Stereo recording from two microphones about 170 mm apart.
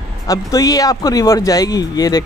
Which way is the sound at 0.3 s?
20° left (ahead or behind).